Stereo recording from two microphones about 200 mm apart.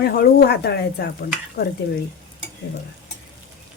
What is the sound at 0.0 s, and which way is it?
Speech, 50° left (ahead or behind).